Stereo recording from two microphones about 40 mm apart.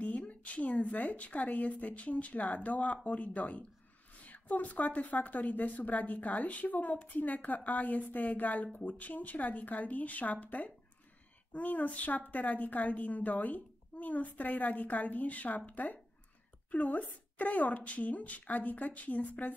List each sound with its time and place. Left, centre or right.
0.0 s a woman's voice: left